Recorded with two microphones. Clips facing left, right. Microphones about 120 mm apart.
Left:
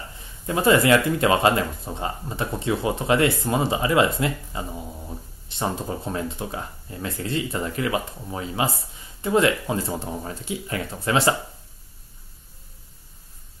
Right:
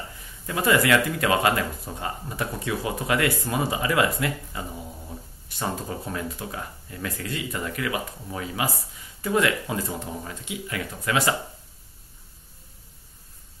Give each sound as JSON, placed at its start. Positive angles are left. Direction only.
{"t": 0.5, "sound": "speech", "side_deg": 25}